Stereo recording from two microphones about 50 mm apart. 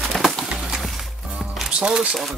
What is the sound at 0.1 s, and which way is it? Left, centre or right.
Music, centre.